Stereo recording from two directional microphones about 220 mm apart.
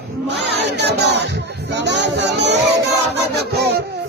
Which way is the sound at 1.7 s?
50° right (ahead or behind).